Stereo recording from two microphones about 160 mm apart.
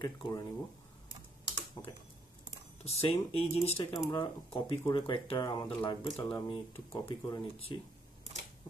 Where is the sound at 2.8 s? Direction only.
40° left (ahead or behind).